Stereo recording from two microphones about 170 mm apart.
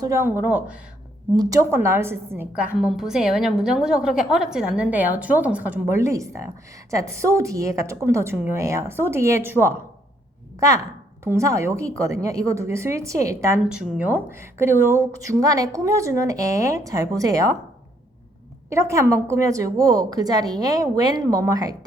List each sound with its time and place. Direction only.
0.0 s a woman's voice: 15° right (ahead or behind)
1.4 s a woman's voice: 20° right (ahead or behind)
11.2 s a woman's voice: 15° right (ahead or behind)
13.7 s speech: 5° right (ahead or behind)
18.7 s speech: 15° right (ahead or behind)